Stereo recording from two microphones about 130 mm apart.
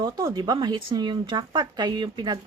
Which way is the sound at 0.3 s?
30° right (ahead or behind).